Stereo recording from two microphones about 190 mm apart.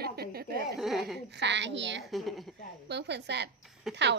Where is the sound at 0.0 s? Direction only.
55° right (ahead or behind).